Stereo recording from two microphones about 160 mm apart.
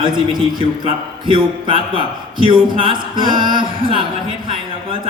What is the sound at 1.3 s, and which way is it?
A man's voice, 35° right (ahead or behind).